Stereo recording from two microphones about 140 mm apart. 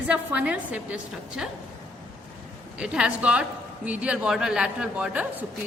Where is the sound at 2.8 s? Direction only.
5° right (ahead or behind).